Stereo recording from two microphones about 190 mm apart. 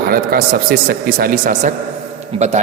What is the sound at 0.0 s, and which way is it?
A man's voice, 50° right (ahead or behind).